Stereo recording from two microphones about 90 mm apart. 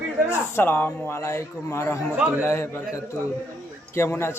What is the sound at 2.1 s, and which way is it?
Speech, 15° right (ahead or behind).